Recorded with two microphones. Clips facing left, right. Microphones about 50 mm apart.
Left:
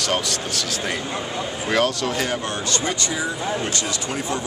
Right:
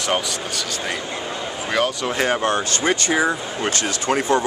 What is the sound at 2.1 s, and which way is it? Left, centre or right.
Speech, right.